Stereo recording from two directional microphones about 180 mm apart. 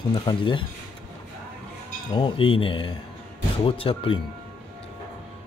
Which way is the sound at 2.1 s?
25° left (ahead or behind).